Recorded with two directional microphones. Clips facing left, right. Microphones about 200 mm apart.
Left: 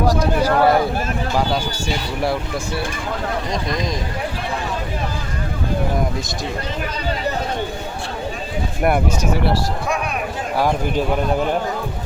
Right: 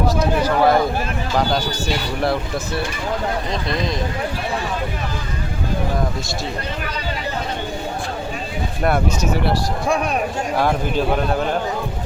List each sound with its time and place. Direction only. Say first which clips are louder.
0.2 s speech: left 1 dB; 10° left (ahead or behind)
8.8 s speech: left 1 dB; 15° left (ahead or behind)
10.6 s speech: left 1 dB; 10° left (ahead or behind)